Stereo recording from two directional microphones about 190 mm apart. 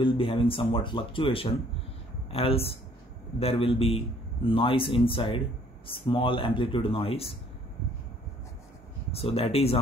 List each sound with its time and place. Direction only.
0.0 s speech: 30° left (ahead or behind)
9.1 s speech: 30° left (ahead or behind)